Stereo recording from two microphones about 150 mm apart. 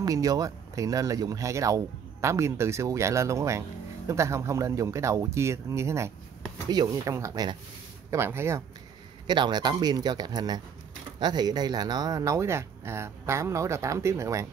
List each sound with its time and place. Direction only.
0.0 s speech: 25° right (ahead or behind)
9.3 s speech: 30° right (ahead or behind)